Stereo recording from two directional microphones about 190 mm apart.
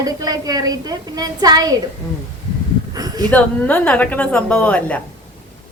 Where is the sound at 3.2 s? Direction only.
10° left (ahead or behind).